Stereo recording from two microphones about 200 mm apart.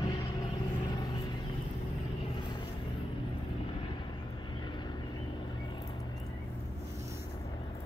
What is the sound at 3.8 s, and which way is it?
Vehicle, 25° left (ahead or behind).